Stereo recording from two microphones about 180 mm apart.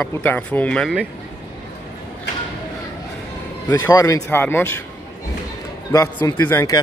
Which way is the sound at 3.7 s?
15° left (ahead or behind).